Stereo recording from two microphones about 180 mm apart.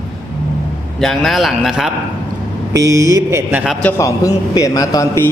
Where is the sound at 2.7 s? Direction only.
20° right (ahead or behind).